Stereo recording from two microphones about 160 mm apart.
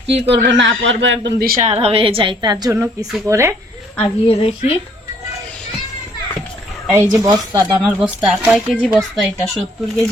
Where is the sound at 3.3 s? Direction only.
15° right (ahead or behind).